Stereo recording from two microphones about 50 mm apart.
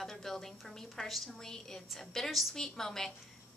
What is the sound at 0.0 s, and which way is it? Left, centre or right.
A woman's voice, centre.